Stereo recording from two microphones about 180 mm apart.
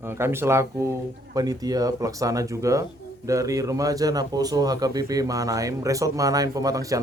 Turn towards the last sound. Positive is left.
turn(degrees=-20)  # may be behind; listen again after turning